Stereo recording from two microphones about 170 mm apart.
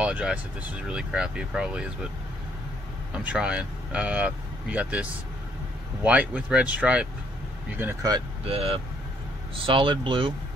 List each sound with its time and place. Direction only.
0.0 s speech: 5° right (ahead or behind)
3.1 s speech: 5° right (ahead or behind)
6.0 s speech: 5° right (ahead or behind)
8.5 s speech: 35° right (ahead or behind)